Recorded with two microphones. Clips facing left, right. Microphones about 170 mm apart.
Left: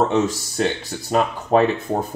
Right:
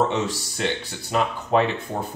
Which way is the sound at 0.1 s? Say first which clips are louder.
Left 6 dB; 45° left (ahead or behind).